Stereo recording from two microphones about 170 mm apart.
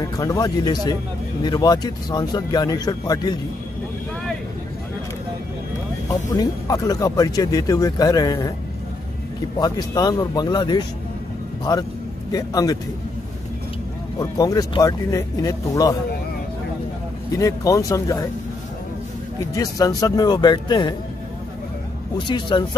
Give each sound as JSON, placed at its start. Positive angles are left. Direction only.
{"t": 0.0, "sound": "speech", "side_deg": 20}
{"t": 6.0, "sound": "speech", "side_deg": 20}
{"t": 9.6, "sound": "speech", "side_deg": 25}
{"t": 14.2, "sound": "speech", "side_deg": 20}
{"t": 17.3, "sound": "speech", "side_deg": 20}
{"t": 19.5, "sound": "speech", "side_deg": 20}
{"t": 22.3, "sound": "speech", "side_deg": 25}